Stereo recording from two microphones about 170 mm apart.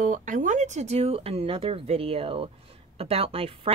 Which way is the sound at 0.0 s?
50° right (ahead or behind).